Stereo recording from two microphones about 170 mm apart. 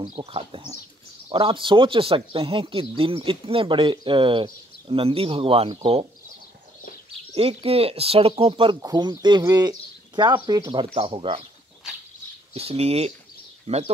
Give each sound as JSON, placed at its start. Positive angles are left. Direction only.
{"t": 0.0, "sound": "speech", "side_deg": -35}
{"t": 7.3, "sound": "speech", "side_deg": -35}
{"t": 12.5, "sound": "speech", "side_deg": -35}